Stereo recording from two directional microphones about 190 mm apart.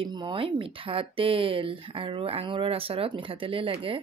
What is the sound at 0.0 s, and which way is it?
Speech, 25° right (ahead or behind).